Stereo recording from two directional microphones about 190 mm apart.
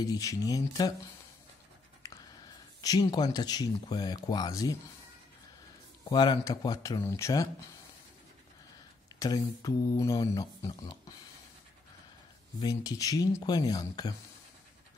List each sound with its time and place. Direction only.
0.0 s speech: 20° left (ahead or behind)
2.0 s a sound: 15° left (ahead or behind)
2.8 s speech: 20° left (ahead or behind)
6.0 s speech: 20° left (ahead or behind)
9.2 s speech: 20° left (ahead or behind)
12.6 s speech: 20° left (ahead or behind)